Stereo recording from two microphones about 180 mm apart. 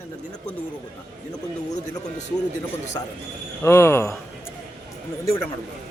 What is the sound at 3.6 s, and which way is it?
Speech, 15° left (ahead or behind).